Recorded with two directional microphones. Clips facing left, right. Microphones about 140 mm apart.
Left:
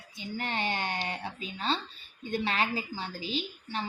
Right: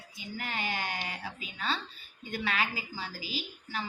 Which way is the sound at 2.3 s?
30° left (ahead or behind).